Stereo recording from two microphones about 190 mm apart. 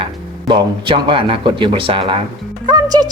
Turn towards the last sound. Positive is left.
turn(degrees=-20)  # may be behind; listen again after turning